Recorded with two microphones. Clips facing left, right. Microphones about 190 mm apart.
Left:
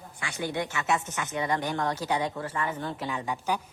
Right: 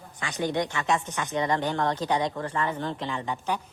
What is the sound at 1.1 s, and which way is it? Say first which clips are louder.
A woman's voice: right 3 dB; 40° right (ahead or behind).